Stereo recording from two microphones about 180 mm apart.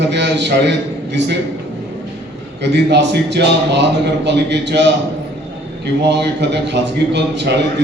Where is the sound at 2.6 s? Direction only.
70° right (ahead or behind).